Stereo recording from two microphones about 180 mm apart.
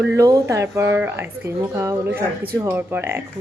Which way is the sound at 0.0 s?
15° right (ahead or behind).